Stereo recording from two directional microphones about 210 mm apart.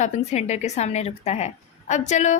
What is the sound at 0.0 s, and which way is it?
A woman's voice, 35° left (ahead or behind).